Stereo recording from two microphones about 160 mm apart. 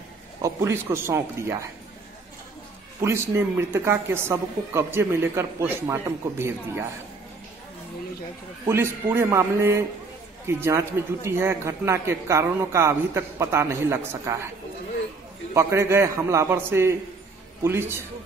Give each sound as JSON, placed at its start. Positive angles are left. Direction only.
{"t": 0.4, "sound": "a man's voice", "side_deg": -20}
{"t": 3.0, "sound": "a man's voice", "side_deg": -15}
{"t": 8.6, "sound": "a man's voice", "side_deg": -15}
{"t": 15.5, "sound": "a man's voice", "side_deg": -15}